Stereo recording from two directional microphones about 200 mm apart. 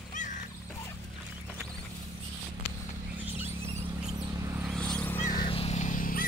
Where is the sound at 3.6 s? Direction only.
30° right (ahead or behind).